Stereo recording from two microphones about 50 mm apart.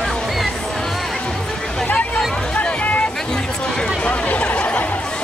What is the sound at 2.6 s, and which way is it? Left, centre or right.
Hubbub, left.